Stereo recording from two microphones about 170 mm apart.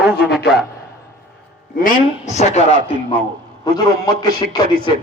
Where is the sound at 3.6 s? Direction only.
25° left (ahead or behind).